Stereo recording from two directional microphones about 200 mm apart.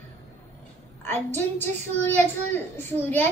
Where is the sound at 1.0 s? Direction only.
10° left (ahead or behind).